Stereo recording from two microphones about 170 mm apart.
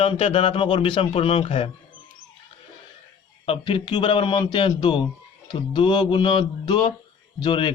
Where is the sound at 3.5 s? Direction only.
30° left (ahead or behind).